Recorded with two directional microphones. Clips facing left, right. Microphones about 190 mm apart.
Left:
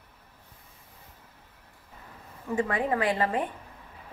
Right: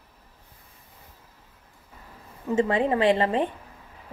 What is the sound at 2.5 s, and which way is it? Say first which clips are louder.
Speech: right 5 dB; 25° right (ahead or behind).